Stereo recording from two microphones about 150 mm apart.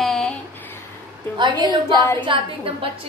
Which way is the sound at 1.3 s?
30° right (ahead or behind).